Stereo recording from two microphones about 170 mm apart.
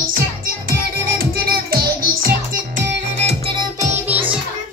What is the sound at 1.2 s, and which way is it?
Music, 65° right (ahead or behind).